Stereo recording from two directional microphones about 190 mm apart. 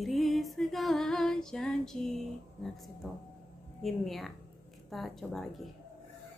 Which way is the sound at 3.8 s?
Centre (ahead or behind).